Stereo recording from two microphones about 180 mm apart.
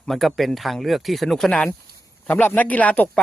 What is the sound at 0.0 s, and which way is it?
Speech, centre (ahead or behind).